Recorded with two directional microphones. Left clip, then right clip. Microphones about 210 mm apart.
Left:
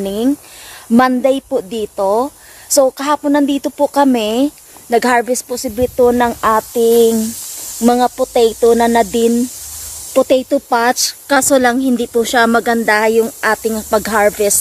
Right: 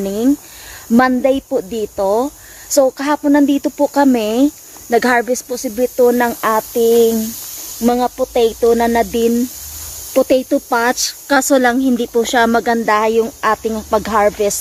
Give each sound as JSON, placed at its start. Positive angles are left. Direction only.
{"t": 0.0, "sound": "a woman's voice", "side_deg": 5}
{"t": 7.8, "sound": "a woman's voice", "side_deg": 25}